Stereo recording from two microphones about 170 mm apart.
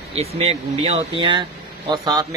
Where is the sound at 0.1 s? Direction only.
35° right (ahead or behind).